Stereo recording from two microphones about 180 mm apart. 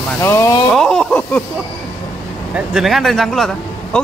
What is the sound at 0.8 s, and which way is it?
Speech, 5° left (ahead or behind).